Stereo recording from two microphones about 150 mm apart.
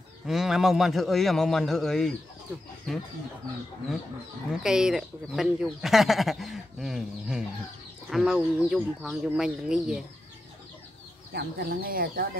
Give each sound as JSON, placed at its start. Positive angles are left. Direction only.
{"t": 0.3, "sound": "speech", "side_deg": 0}
{"t": 4.5, "sound": "speech", "side_deg": -5}
{"t": 11.3, "sound": "speech", "side_deg": -90}